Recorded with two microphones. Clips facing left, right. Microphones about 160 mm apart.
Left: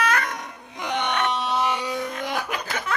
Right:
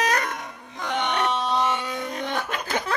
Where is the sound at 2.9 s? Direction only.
35° right (ahead or behind).